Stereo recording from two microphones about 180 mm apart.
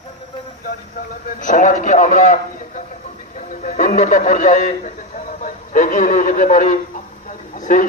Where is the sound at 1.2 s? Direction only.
45° left (ahead or behind).